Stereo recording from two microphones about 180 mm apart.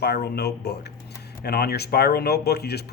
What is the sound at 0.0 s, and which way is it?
Speech, 60° left (ahead or behind).